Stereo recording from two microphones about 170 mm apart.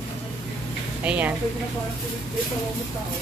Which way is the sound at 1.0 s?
10° right (ahead or behind).